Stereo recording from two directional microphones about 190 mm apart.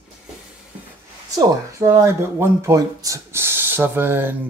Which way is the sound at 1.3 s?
15° right (ahead or behind).